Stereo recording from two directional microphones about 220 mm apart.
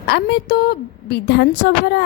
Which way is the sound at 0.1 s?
45° left (ahead or behind).